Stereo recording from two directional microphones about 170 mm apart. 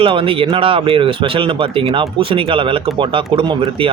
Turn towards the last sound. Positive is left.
turn(degrees=-30)  # may be behind; listen again after turning